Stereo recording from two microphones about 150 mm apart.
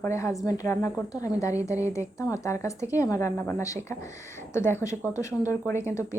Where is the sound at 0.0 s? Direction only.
20° left (ahead or behind).